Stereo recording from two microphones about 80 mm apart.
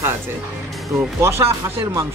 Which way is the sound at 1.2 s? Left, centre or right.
Right.